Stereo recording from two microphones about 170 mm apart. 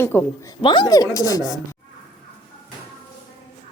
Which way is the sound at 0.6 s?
25° left (ahead or behind).